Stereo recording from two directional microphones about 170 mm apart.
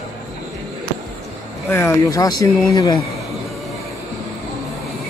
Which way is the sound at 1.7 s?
15° left (ahead or behind).